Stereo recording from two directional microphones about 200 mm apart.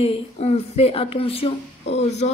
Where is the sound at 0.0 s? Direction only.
30° left (ahead or behind).